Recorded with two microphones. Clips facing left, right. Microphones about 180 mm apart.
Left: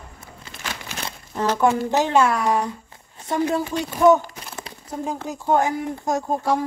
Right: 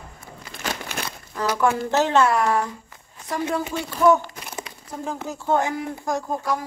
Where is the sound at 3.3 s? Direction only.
25° left (ahead or behind).